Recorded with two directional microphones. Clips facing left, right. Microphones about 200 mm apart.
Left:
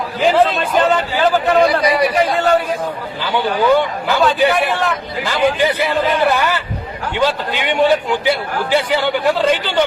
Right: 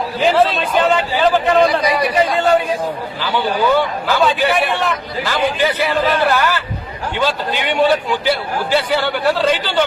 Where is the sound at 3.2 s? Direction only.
20° left (ahead or behind).